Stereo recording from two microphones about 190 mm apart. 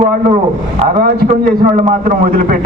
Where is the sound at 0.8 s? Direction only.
40° right (ahead or behind).